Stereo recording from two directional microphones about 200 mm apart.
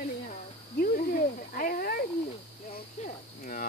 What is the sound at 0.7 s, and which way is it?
Speech, 45° left (ahead or behind).